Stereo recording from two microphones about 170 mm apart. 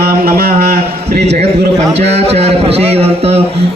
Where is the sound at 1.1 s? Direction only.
40° right (ahead or behind).